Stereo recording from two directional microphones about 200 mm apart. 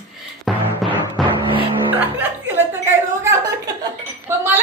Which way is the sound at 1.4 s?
25° right (ahead or behind).